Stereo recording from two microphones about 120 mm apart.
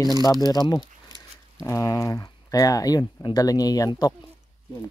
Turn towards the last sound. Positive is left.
turn(degrees=30)  # may be behind; listen again after turning